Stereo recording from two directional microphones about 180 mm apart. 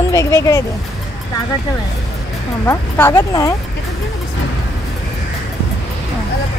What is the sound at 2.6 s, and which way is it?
Speech, 10° left (ahead or behind).